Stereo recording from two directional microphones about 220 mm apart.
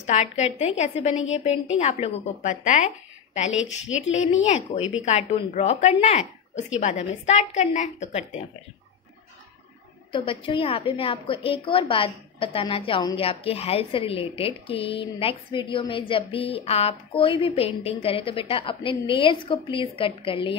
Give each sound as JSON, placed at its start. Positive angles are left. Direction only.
{"t": 0.0, "sound": "a woman's voice", "side_deg": 30}
{"t": 3.5, "sound": "a woman's voice", "side_deg": 60}
{"t": 4.5, "sound": "a woman's voice", "side_deg": 30}
{"t": 10.1, "sound": "a woman's voice", "side_deg": 25}